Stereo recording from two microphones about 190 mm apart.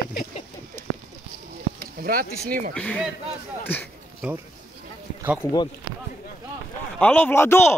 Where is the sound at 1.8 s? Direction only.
50° right (ahead or behind).